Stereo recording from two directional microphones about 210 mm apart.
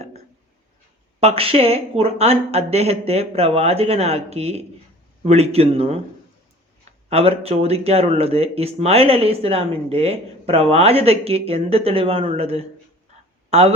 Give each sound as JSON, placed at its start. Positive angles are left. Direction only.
{"t": 1.2, "sound": "speech", "side_deg": -30}
{"t": 7.1, "sound": "speech", "side_deg": -30}